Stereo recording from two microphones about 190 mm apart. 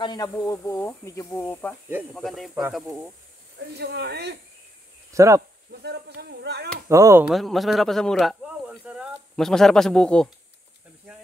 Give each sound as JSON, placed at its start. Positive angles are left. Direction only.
{"t": 0.0, "sound": "speech", "side_deg": 20}
{"t": 2.1, "sound": "speech", "side_deg": 0}
{"t": 3.5, "sound": "speech", "side_deg": -60}
{"t": 5.1, "sound": "speech", "side_deg": -15}
{"t": 5.7, "sound": "speech", "side_deg": -60}
{"t": 6.9, "sound": "speech", "side_deg": -15}
{"t": 7.2, "sound": "speech", "side_deg": 0}